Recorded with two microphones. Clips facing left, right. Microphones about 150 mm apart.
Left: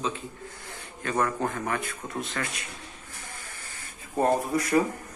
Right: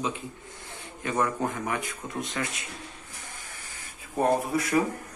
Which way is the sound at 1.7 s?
15° right (ahead or behind).